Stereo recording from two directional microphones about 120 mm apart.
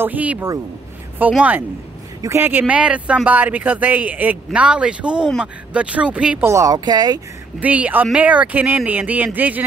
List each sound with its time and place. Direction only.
0.0 s speech: 15° right (ahead or behind)
6.4 s speech: 25° right (ahead or behind)
7.6 s speech: 15° right (ahead or behind)